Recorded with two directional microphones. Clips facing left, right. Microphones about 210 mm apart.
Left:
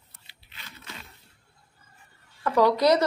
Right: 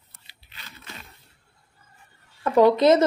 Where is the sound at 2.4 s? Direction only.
25° right (ahead or behind).